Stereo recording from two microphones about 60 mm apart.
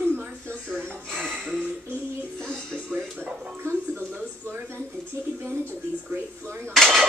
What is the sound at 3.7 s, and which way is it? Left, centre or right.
Music, right.